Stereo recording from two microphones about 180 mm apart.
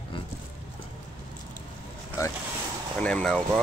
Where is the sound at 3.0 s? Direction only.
5° left (ahead or behind).